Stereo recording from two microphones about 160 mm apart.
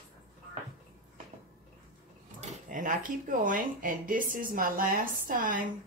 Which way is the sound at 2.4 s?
55° right (ahead or behind).